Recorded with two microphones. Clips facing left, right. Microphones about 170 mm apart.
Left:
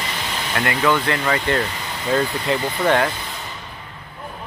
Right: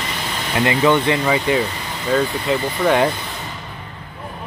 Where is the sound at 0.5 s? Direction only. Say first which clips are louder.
Right 4 dB; 15° right (ahead or behind); by 2.9 s centre (ahead or behind).